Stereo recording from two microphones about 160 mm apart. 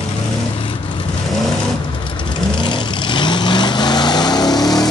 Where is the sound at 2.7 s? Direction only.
30° left (ahead or behind).